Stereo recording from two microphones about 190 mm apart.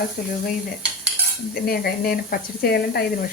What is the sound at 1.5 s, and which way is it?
Stir, 50° left (ahead or behind).